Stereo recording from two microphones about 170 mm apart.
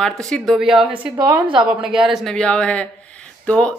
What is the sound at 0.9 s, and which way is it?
Speech, 25° right (ahead or behind).